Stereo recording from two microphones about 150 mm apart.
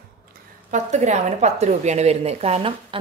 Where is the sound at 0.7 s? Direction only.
50° right (ahead or behind).